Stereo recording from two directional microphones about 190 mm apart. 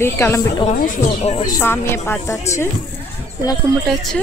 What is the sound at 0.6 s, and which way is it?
Speech, 45° left (ahead or behind).